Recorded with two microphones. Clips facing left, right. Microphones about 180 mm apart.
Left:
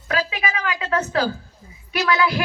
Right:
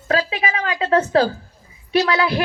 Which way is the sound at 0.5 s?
35° right (ahead or behind).